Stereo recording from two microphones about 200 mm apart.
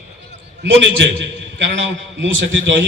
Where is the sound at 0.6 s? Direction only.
65° right (ahead or behind).